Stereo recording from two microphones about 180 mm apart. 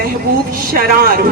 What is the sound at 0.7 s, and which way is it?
Speech, 55° right (ahead or behind).